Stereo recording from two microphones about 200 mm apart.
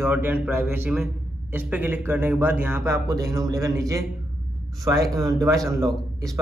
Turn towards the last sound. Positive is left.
turn(degrees=-15)  # may be behind; listen again after turning